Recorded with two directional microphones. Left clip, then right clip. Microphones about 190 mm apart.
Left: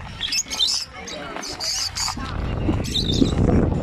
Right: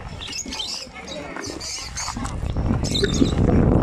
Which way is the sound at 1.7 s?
60° left (ahead or behind).